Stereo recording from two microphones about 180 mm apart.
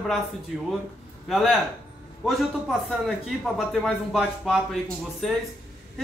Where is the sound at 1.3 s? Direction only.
Centre (ahead or behind).